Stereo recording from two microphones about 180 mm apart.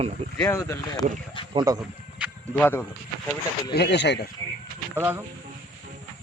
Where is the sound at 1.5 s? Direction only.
20° right (ahead or behind).